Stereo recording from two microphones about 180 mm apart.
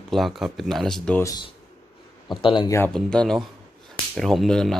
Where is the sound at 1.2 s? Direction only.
20° left (ahead or behind).